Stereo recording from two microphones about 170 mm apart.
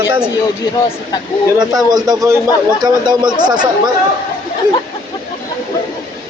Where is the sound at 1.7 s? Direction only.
20° right (ahead or behind).